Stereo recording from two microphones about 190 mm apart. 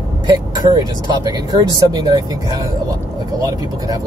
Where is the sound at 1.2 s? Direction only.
20° right (ahead or behind).